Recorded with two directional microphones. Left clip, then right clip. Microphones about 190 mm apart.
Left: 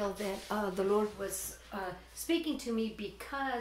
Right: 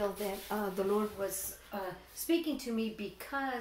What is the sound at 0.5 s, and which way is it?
Speech, 35° left (ahead or behind).